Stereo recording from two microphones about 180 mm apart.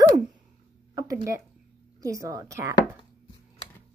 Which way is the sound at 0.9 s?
15° right (ahead or behind).